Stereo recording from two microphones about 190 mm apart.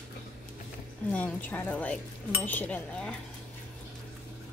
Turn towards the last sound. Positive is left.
turn(degrees=5)  # may be behind; listen again after turning